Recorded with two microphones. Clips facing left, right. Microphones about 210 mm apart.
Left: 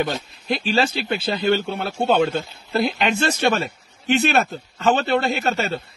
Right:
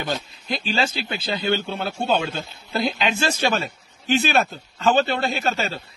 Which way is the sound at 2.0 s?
60° left (ahead or behind).